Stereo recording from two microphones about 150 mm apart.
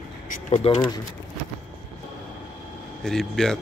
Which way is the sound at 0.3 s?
55° left (ahead or behind).